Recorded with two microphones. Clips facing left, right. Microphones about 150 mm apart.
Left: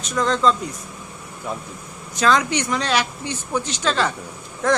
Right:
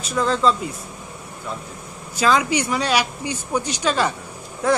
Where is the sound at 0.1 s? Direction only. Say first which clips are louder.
Even; 5° right (ahead or behind).